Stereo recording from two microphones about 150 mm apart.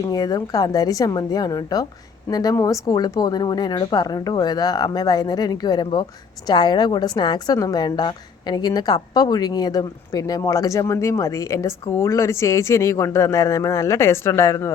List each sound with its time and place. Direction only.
0.1 s a woman's voice: 25° left (ahead or behind)